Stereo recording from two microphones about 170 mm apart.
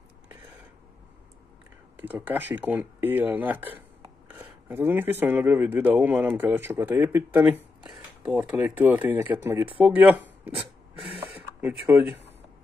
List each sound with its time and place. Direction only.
2.0 s speech: 10° right (ahead or behind)
11.9 s speech: 10° right (ahead or behind)